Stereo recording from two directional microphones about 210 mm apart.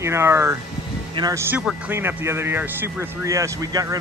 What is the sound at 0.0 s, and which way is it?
Speech, 10° right (ahead or behind).